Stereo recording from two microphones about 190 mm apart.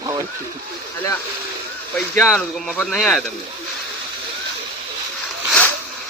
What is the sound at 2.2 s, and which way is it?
Speech, centre (ahead or behind).